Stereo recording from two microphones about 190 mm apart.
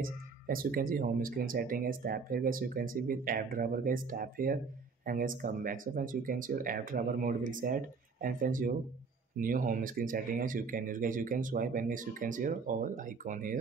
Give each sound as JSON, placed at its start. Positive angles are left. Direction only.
{"t": 0.0, "sound": "speech", "side_deg": -50}